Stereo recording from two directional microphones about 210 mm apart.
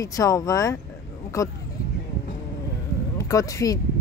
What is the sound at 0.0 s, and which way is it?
Speech, 15° left (ahead or behind).